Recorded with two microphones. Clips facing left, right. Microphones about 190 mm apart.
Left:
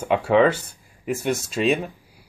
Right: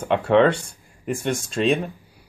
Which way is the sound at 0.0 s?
5° left (ahead or behind).